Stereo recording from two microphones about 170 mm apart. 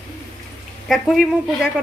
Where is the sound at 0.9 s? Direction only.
Centre (ahead or behind).